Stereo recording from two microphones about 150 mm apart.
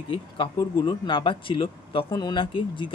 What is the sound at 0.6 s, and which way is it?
Speech, 30° left (ahead or behind).